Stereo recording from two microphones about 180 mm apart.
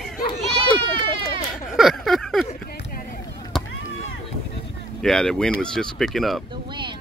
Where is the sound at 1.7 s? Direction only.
Centre (ahead or behind).